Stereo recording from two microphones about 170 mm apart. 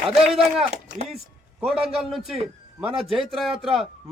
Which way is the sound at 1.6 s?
5° right (ahead or behind).